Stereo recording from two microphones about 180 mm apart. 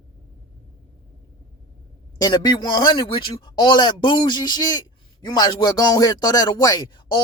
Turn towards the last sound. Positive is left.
turn(degrees=25)  # may be behind; listen again after turning